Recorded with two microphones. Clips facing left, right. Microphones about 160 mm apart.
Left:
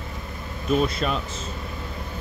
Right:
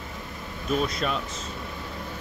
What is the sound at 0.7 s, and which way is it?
Speech, centre (ahead or behind).